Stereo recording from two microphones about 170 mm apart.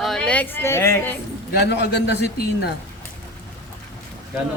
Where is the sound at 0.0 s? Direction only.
5° left (ahead or behind).